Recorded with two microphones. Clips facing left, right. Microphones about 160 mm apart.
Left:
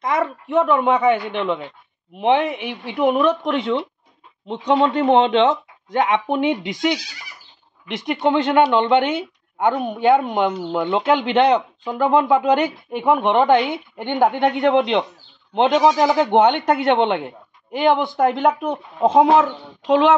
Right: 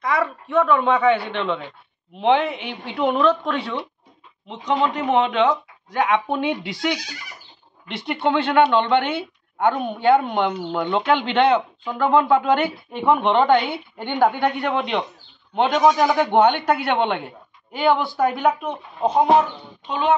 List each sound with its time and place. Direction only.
0.0 s a woman's voice: 20° left (ahead or behind)
4.5 s a woman's voice: 30° left (ahead or behind)
19.8 s speech: 90° left